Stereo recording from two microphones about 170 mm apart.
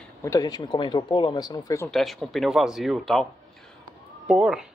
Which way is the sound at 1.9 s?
Centre (ahead or behind).